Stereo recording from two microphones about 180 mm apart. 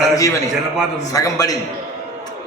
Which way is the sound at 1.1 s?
20° left (ahead or behind).